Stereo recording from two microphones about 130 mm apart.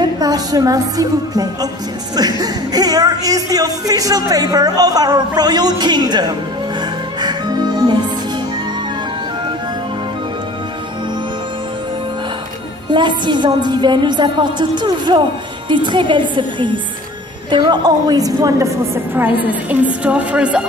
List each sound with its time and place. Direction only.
0.0 s music: 30° right (ahead or behind)
2.1 s speech: 30° right (ahead or behind)
6.8 s music: 35° right (ahead or behind)
12.9 s a woman's voice: 35° right (ahead or behind); by 20.6 s 10° right (ahead or behind)